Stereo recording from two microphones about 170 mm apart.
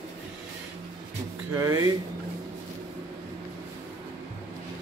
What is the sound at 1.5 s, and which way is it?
Speech, 20° right (ahead or behind).